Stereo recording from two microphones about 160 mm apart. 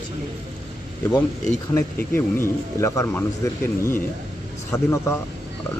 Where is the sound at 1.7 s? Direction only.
15° left (ahead or behind).